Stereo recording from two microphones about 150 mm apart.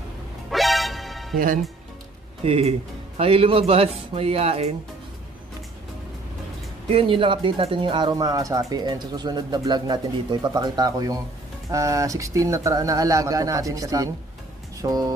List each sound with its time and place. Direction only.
0.5 s music: centre (ahead or behind)
2.4 s a man's voice: 40° right (ahead or behind)
6.9 s speech: 35° right (ahead or behind)